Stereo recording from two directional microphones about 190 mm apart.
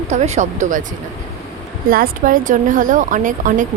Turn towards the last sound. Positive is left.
turn(degrees=-45)  # may be behind; listen again after turning